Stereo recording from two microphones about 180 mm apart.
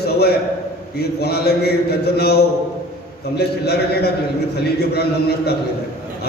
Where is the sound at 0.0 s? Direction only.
60° left (ahead or behind).